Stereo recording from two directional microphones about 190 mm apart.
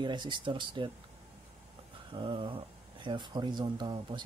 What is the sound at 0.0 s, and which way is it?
Speech, 25° right (ahead or behind).